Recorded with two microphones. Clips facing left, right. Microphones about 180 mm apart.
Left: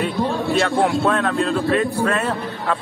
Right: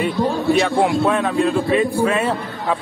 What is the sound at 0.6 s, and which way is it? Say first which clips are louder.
A man's voice: left 1 dB; centre (ahead or behind).